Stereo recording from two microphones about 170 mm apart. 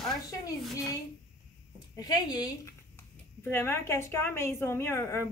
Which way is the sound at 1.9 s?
20° left (ahead or behind).